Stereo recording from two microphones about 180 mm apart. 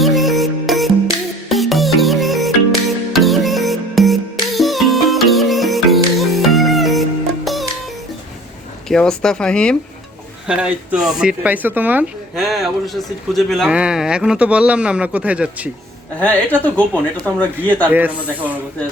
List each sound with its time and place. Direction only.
0.0 s music: centre (ahead or behind)
8.9 s speech: 5° left (ahead or behind)
12.4 s speech: centre (ahead or behind)
16.2 s speech: 10° left (ahead or behind)
17.9 s speech: 10° right (ahead or behind)